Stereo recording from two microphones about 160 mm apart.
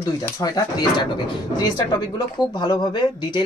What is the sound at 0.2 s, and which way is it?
Speech, 25° left (ahead or behind).